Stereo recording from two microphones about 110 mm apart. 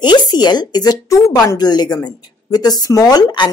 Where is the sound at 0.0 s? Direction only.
40° left (ahead or behind).